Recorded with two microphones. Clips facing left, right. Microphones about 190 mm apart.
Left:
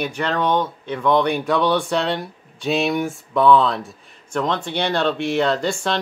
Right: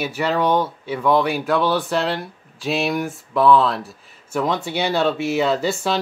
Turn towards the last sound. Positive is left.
turn(degrees=-5)  # may be behind; listen again after turning